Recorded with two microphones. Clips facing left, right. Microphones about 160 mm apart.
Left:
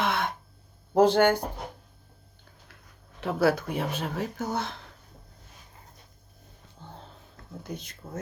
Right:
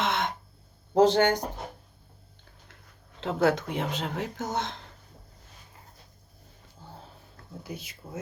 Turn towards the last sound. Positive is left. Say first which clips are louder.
# left 1 dB
turn(degrees=-5)  # may be behind; listen again after turning